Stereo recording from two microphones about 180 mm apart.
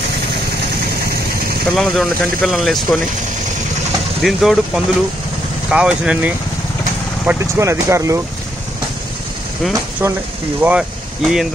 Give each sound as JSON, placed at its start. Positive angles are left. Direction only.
{"t": 1.8, "sound": "speech", "side_deg": 0}
{"t": 4.2, "sound": "speech", "side_deg": 0}
{"t": 10.0, "sound": "speech", "side_deg": -10}